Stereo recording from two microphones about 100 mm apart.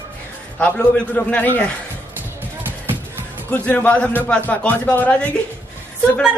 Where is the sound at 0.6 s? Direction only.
10° left (ahead or behind).